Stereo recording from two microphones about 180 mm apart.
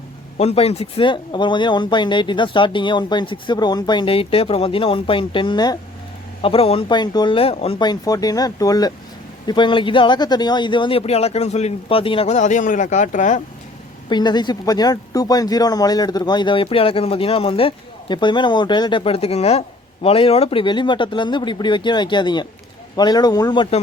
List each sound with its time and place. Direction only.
0.3 s speech: 35° left (ahead or behind)
14.1 s speech: 25° left (ahead or behind)